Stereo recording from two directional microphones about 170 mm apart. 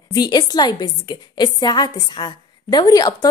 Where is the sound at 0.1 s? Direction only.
25° left (ahead or behind).